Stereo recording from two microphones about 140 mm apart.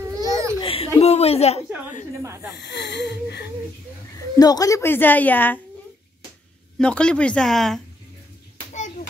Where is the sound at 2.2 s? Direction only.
20° right (ahead or behind).